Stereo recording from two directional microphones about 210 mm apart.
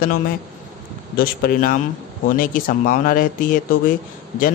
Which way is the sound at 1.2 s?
45° left (ahead or behind).